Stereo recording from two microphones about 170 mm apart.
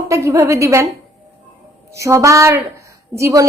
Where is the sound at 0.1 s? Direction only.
15° right (ahead or behind).